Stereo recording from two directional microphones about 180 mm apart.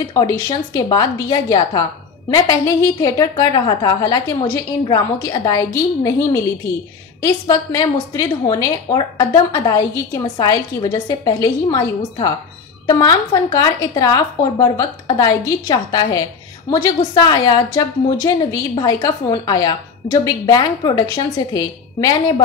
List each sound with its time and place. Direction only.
0.1 s a woman's voice: 20° left (ahead or behind)